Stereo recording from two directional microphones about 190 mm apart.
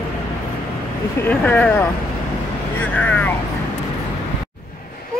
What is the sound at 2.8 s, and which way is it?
Vehicle, 5° left (ahead or behind).